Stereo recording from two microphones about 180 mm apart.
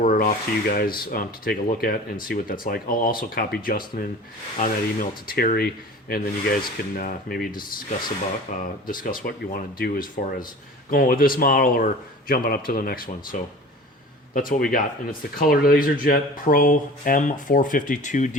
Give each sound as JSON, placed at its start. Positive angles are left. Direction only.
{"t": 0.0, "sound": "speech", "side_deg": 50}
{"t": 8.5, "sound": "speech", "side_deg": 45}